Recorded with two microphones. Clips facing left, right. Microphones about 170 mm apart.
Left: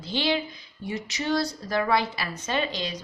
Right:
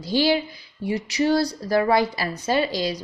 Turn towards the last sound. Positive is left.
turn(degrees=-35)  # may be behind; listen again after turning